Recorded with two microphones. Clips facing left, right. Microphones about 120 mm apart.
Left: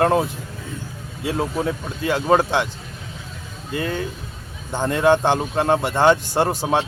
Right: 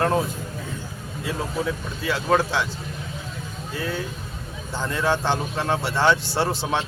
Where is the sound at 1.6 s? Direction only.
50° left (ahead or behind).